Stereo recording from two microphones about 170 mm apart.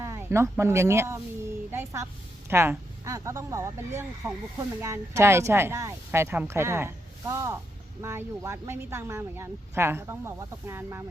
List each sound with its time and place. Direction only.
0.0 s speech: 15° right (ahead or behind)
1.7 s a sound: 15° right (ahead or behind)
2.5 s speech: 15° right (ahead or behind)